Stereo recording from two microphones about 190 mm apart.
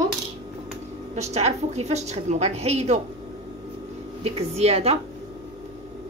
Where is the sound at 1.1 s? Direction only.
35° right (ahead or behind).